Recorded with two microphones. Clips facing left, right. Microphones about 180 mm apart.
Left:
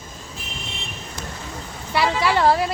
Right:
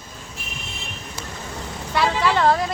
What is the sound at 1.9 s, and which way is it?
Speech, 10° left (ahead or behind).